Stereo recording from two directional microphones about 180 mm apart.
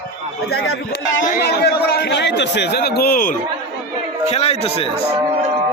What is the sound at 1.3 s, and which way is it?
A man's voice, 60° left (ahead or behind).